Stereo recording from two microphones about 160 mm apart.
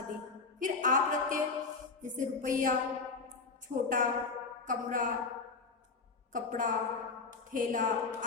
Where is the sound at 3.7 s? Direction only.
60° right (ahead or behind).